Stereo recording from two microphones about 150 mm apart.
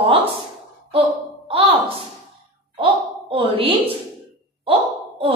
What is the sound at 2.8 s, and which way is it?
Speech, 35° right (ahead or behind).